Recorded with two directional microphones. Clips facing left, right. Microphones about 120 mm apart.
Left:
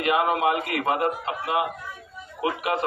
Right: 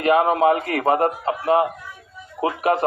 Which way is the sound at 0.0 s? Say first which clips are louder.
Right 5 dB; 40° right (ahead or behind).